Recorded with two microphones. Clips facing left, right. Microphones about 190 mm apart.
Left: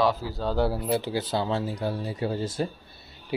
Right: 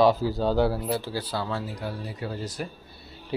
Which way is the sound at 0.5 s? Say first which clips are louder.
Right 2 dB; 5° left (ahead or behind).